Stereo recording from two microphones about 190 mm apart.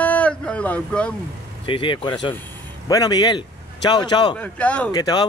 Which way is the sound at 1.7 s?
25° left (ahead or behind).